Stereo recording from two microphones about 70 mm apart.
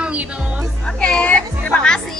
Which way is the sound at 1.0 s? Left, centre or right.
Centre.